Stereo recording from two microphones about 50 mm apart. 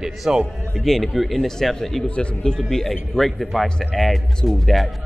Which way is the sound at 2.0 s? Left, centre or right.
Centre.